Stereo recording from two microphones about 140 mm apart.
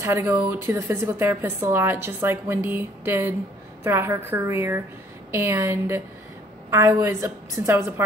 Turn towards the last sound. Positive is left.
turn(degrees=-20)  # may be behind; listen again after turning